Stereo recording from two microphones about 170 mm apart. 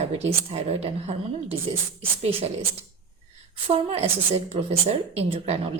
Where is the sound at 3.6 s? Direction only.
35° right (ahead or behind).